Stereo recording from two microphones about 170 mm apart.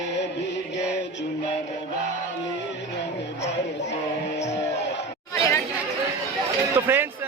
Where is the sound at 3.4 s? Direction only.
90° left.